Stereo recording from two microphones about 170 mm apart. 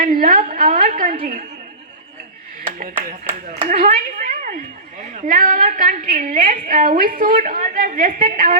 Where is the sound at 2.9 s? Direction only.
15° right (ahead or behind).